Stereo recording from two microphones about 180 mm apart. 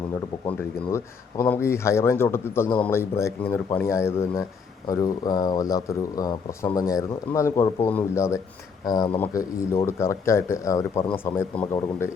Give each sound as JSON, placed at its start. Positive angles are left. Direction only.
{"t": 0.9, "sound": "speech", "side_deg": 15}